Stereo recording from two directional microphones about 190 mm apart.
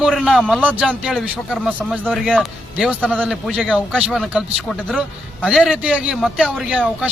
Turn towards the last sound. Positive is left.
turn(degrees=-5)  # may be behind; listen again after turning